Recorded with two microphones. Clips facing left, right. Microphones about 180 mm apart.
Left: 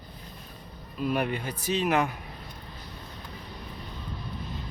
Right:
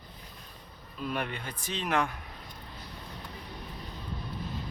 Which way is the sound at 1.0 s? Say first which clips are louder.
Left 6 dB; 10° left (ahead or behind).